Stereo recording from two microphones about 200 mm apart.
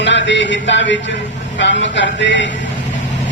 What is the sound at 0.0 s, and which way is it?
Speech, 65° left (ahead or behind).